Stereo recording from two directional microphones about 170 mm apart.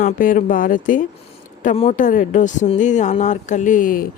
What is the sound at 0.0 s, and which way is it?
Speech, 50° left (ahead or behind).